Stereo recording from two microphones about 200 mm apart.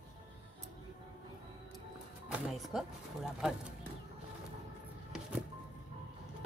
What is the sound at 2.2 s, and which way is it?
Music, 5° right (ahead or behind).